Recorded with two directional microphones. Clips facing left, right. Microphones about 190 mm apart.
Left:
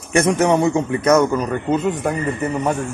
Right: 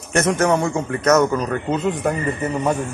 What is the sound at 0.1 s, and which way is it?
A man's voice, 15° left (ahead or behind).